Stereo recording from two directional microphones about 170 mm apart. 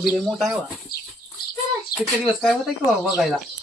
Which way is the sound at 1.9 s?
65° left (ahead or behind).